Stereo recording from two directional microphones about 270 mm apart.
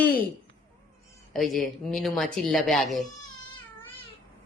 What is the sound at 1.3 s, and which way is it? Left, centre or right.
Speech, centre.